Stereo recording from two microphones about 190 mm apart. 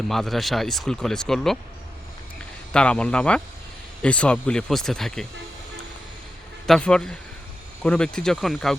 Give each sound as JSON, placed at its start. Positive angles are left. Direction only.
{"t": 0.1, "sound": "speech", "side_deg": 0}
{"t": 2.7, "sound": "speech", "side_deg": 5}
{"t": 6.7, "sound": "speech", "side_deg": 5}